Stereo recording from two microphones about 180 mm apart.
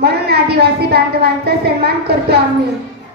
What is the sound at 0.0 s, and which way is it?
A woman's voice, 65° right (ahead or behind).